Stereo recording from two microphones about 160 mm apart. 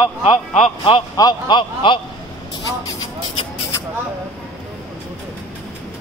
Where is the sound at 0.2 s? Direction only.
40° left (ahead or behind).